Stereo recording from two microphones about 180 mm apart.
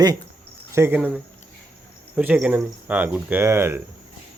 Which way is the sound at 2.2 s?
5° right (ahead or behind).